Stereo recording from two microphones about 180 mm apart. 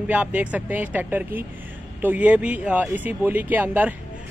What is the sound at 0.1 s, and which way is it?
Speech, 10° right (ahead or behind).